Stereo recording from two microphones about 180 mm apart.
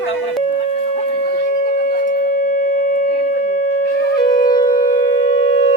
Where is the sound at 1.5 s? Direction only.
50° left (ahead or behind).